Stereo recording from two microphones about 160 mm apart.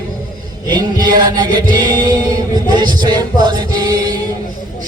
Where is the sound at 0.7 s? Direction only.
25° right (ahead or behind).